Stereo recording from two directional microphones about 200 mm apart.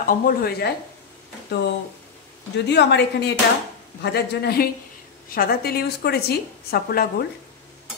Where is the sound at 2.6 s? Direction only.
60° left (ahead or behind).